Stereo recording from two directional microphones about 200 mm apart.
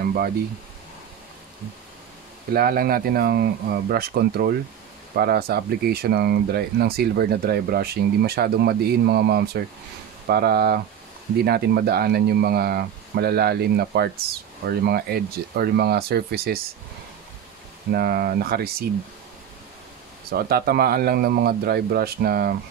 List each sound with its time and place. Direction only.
0.0 s a sound: 50° right (ahead or behind)
2.5 s speech: 50° right (ahead or behind)
17.9 s speech: 50° right (ahead or behind)
20.2 s speech: 50° right (ahead or behind)